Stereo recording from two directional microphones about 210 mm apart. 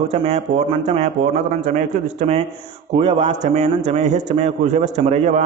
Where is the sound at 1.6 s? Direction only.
35° right (ahead or behind).